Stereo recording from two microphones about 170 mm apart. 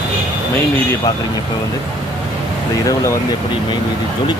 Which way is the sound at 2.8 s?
20° left (ahead or behind).